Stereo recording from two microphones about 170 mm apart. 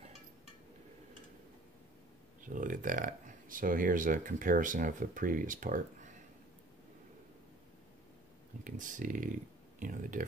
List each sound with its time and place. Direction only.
2.4 s speech: 50° right (ahead or behind)
8.6 s speech: 50° right (ahead or behind)